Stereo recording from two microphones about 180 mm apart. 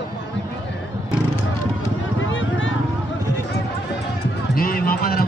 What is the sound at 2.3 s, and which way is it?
Vehicle, 90° left.